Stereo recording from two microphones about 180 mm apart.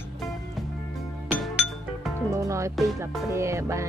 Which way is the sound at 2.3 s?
15° right (ahead or behind).